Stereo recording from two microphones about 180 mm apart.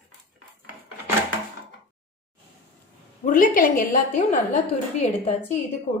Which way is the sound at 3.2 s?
45° left (ahead or behind).